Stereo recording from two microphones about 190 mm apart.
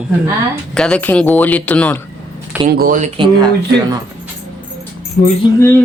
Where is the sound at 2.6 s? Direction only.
45° right (ahead or behind).